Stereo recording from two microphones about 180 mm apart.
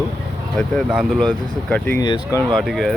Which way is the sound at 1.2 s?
5° left (ahead or behind).